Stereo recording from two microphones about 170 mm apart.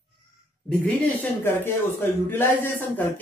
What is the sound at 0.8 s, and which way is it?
Speech, 10° left (ahead or behind).